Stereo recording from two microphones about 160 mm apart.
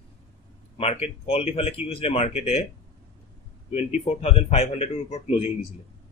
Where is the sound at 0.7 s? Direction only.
40° left (ahead or behind).